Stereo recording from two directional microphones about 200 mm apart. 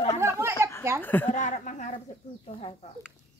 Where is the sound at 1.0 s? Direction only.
10° left (ahead or behind).